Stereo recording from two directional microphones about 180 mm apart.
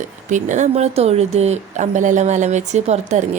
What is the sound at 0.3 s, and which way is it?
Speech, 45° right (ahead or behind).